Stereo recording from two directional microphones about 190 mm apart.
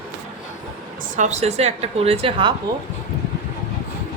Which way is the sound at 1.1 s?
40° right (ahead or behind).